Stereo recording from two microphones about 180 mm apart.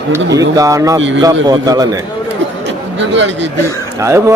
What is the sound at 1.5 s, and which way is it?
Speech, 20° right (ahead or behind).